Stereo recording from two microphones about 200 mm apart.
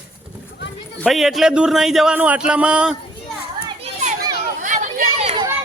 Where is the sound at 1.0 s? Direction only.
Centre (ahead or behind).